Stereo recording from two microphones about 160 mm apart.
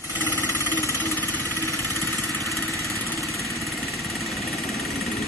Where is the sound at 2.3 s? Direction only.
20° left (ahead or behind).